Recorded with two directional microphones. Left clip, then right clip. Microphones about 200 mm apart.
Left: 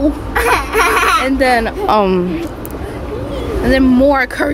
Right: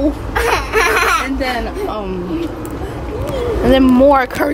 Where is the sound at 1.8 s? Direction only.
45° left (ahead or behind).